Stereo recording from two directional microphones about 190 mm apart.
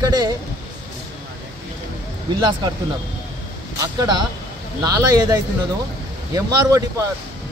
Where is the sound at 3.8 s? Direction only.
20° right (ahead or behind).